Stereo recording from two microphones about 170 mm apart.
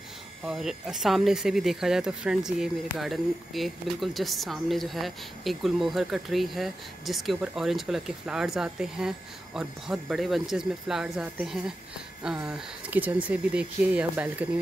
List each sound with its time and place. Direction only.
0.4 s speech: 5° right (ahead or behind)